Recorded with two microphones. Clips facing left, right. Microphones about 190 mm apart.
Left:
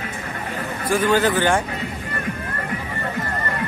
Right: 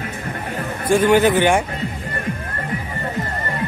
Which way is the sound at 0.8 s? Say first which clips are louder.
Right 4 dB; 25° right (ahead or behind).